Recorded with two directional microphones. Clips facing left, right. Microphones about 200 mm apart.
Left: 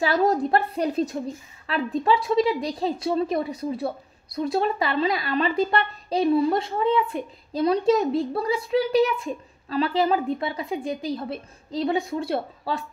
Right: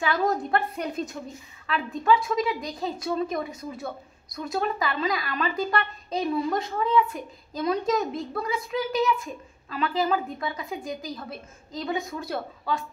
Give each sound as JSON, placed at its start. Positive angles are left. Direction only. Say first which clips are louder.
{"t": 0.0, "sound": "a woman's voice", "louder": "left 4 dB", "side_deg": 35}